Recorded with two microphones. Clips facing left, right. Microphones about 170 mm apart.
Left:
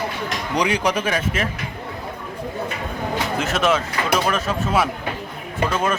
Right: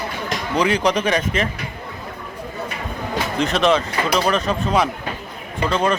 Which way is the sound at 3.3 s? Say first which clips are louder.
Right 4 dB; 5° left (ahead or behind).